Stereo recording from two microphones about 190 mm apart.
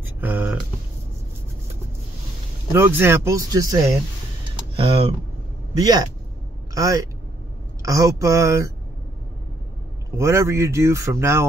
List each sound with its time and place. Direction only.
0.0 s a sound: 10° right (ahead or behind)
2.7 s a man's voice: 10° right (ahead or behind)
10.1 s speech: 15° right (ahead or behind)